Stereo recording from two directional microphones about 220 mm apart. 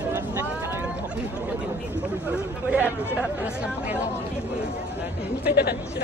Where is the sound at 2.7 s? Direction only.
5° right (ahead or behind).